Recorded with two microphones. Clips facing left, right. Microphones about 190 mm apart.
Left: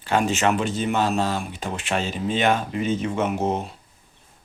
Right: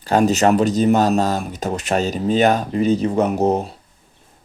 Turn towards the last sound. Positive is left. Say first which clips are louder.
# right 6 dB
turn(degrees=-40)  # may be behind; listen again after turning